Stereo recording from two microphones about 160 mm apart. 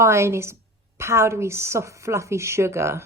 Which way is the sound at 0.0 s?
15° right (ahead or behind).